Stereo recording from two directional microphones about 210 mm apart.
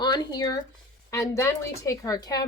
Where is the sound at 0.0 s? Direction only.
20° left (ahead or behind).